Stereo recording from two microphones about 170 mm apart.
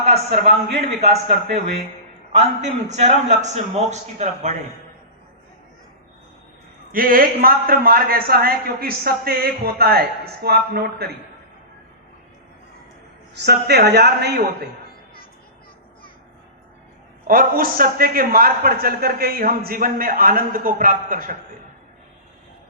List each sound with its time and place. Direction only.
0.3 s a man's voice: 40° right (ahead or behind)
6.9 s a man's voice: 60° right (ahead or behind)
13.3 s a man's voice: 75° right (ahead or behind)
17.2 s a man's voice: 55° right (ahead or behind)